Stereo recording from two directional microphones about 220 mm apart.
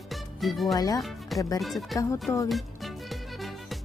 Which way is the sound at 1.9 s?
15° left (ahead or behind).